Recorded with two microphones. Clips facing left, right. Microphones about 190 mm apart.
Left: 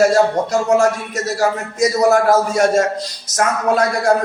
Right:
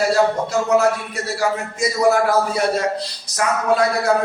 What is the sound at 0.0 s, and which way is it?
Speech, 45° left (ahead or behind).